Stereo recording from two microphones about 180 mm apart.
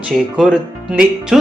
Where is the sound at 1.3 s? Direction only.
Centre (ahead or behind).